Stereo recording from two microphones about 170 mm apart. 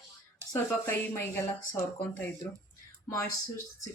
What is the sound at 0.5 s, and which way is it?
Speech, 15° left (ahead or behind).